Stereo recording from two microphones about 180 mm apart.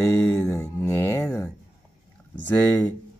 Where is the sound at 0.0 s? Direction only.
15° left (ahead or behind).